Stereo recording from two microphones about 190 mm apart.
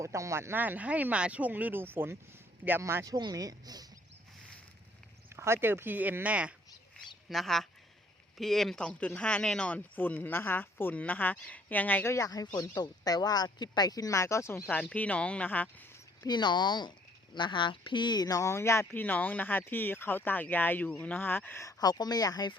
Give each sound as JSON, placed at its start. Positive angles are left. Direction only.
{"t": 0.0, "sound": "speech", "side_deg": -15}
{"t": 5.3, "sound": "speech", "side_deg": -15}
{"t": 16.2, "sound": "speech", "side_deg": 20}